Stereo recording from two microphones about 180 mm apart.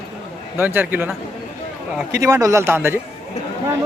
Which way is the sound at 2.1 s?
20° right (ahead or behind).